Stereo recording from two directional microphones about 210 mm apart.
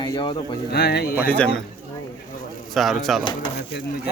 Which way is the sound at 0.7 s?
50° left (ahead or behind).